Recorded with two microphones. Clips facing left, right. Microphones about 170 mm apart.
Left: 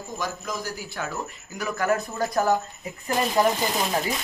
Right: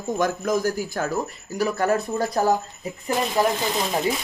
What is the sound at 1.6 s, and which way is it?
Speech, 30° right (ahead or behind).